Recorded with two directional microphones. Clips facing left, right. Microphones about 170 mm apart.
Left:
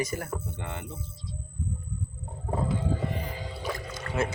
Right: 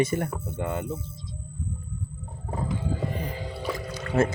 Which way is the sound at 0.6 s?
45° right (ahead or behind).